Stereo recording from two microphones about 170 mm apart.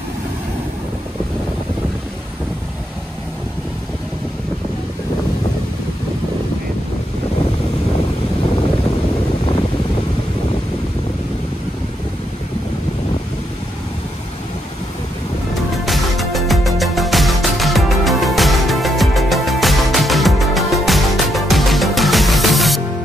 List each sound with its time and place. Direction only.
15.7 s music: centre (ahead or behind)